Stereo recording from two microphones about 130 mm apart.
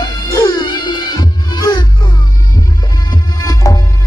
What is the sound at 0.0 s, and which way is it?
Music, 30° left (ahead or behind).